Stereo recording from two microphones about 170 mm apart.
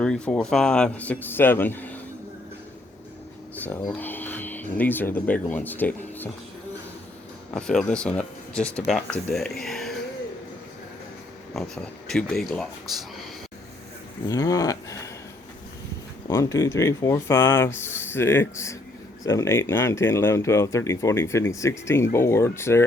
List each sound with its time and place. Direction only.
0.0 s speech: 5° left (ahead or behind)
3.5 s a sound: 10° left (ahead or behind)
3.8 s speech: 10° left (ahead or behind)
7.5 s speech: 5° left (ahead or behind)
11.5 s speech: 5° left (ahead or behind)
14.3 s speech: 20° left (ahead or behind)
16.3 s speech: 15° left (ahead or behind)